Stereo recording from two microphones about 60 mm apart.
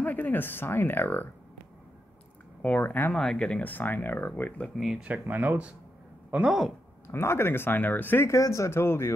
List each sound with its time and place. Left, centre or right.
0.0 s speech: left
2.6 s speech: left
3.1 s speech: centre
3.6 s speech: left
4.7 s speech: centre
5.2 s speech: right
6.4 s speech: centre
7.1 s speech: left
8.3 s speech: left